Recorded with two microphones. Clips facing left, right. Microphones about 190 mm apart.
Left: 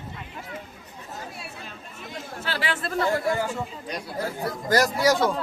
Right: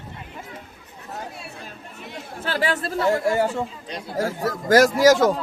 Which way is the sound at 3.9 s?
25° right (ahead or behind).